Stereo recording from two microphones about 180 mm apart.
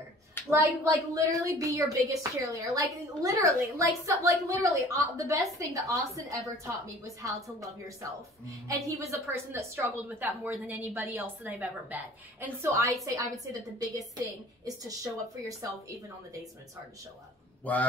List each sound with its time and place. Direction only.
0.5 s a woman's voice: 15° right (ahead or behind)
8.0 s a woman's voice: 20° right (ahead or behind)